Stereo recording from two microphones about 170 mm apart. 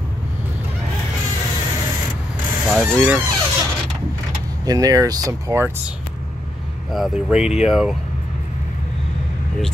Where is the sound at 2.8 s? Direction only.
10° right (ahead or behind).